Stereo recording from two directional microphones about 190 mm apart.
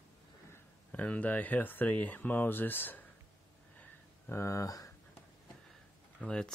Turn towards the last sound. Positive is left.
turn(degrees=5)  # may be behind; listen again after turning